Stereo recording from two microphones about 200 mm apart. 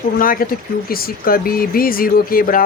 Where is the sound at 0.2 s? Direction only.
45° left (ahead or behind).